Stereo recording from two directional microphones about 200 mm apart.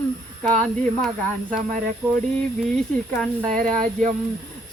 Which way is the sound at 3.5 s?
40° right (ahead or behind).